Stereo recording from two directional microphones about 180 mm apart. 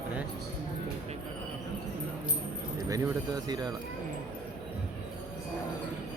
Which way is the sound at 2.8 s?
20° right (ahead or behind).